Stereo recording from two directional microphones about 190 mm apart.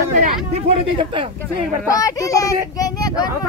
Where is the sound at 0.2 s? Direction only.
35° right (ahead or behind).